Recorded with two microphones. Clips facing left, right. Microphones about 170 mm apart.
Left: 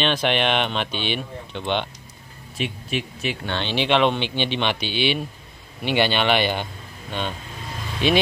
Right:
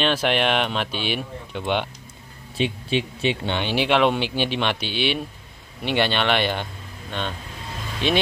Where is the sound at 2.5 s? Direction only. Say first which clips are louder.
Right 4 dB; 30° right (ahead or behind).